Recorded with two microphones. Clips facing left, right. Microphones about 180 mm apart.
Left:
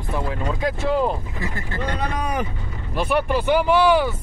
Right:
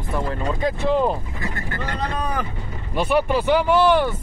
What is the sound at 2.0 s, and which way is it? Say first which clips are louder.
Speech: right 1 dB; 15° left (ahead or behind).